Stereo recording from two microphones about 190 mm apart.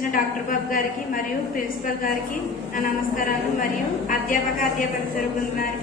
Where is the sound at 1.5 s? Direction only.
45° left (ahead or behind).